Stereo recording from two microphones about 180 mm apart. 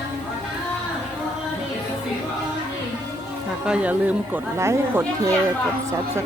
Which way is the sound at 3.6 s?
5° right (ahead or behind).